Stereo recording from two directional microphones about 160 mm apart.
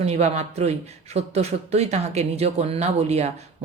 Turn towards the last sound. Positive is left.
turn(degrees=-40)  # may be behind; listen again after turning